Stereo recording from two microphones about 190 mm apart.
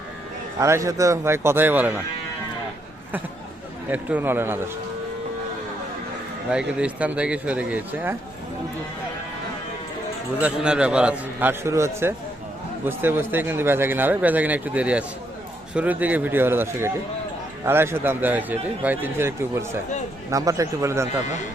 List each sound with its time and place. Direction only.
0.6 s speech: 15° right (ahead or behind)
3.8 s speech: 10° right (ahead or behind)
6.5 s speech: 5° right (ahead or behind)
10.3 s speech: 5° right (ahead or behind)